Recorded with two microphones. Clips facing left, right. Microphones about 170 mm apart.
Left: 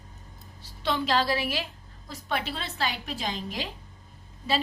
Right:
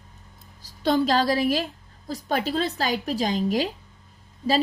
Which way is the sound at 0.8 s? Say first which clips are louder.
Right 6 dB; 40° right (ahead or behind).